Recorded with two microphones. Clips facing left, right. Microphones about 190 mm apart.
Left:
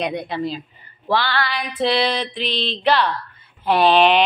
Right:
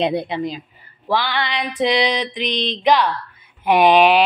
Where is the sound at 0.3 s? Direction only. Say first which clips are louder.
Right 1 dB; 20° right (ahead or behind).